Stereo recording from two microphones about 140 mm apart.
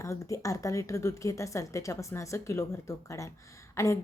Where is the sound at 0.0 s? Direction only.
20° left (ahead or behind).